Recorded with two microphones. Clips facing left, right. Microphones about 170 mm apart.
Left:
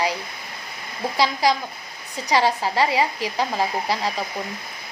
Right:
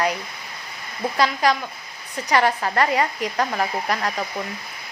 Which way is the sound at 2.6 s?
15° left (ahead or behind).